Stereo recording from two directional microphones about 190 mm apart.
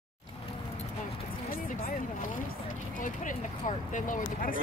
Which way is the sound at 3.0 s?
45° left (ahead or behind).